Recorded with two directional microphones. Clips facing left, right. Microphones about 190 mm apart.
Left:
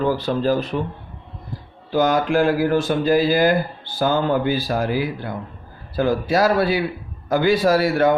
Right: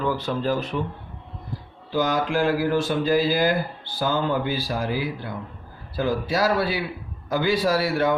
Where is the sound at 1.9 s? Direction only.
50° left (ahead or behind).